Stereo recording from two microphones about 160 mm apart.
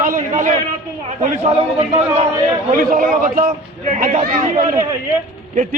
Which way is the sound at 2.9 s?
60° right (ahead or behind).